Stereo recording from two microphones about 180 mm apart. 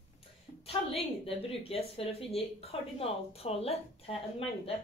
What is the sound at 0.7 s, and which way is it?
A woman's voice, 30° left (ahead or behind).